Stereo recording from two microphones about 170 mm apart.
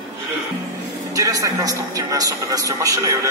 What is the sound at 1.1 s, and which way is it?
A man's voice, 20° right (ahead or behind).